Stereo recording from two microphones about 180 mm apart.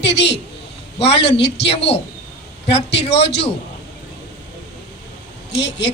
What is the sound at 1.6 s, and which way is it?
Speech, 35° left (ahead or behind).